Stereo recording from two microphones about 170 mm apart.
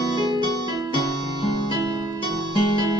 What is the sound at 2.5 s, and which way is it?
Guitar, 25° right (ahead or behind).